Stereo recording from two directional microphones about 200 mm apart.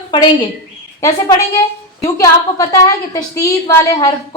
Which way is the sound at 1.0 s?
15° left (ahead or behind).